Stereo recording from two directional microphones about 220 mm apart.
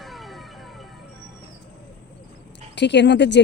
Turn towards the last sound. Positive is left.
turn(degrees=50)  # may be behind; listen again after turning